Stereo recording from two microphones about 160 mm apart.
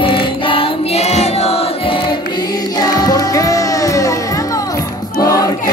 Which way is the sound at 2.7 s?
25° left (ahead or behind).